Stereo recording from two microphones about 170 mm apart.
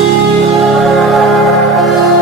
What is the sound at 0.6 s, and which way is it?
Music, centre (ahead or behind).